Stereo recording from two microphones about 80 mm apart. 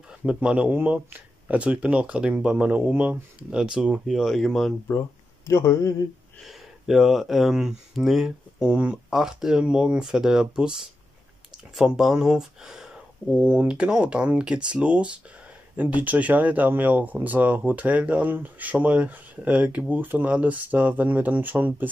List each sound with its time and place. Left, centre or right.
0.3 s speech: centre
5.5 s speech: left
6.4 s speech: centre; by 21.8 s right